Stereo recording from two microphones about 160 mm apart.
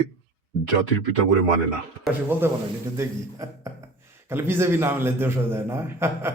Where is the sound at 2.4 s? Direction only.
15° right (ahead or behind).